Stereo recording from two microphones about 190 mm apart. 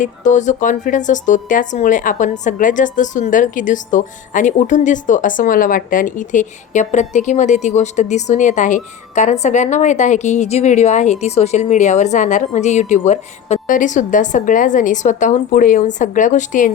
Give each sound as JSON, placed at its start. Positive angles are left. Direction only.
{"t": 0.0, "sound": "a woman's voice", "side_deg": 40}